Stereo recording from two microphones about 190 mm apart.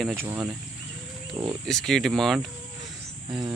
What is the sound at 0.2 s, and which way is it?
Speech, 10° right (ahead or behind).